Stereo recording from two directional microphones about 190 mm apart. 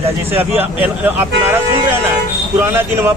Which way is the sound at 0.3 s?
10° right (ahead or behind).